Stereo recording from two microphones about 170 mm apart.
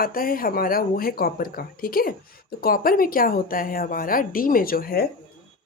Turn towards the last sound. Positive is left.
turn(degrees=60)  # may be behind; listen again after turning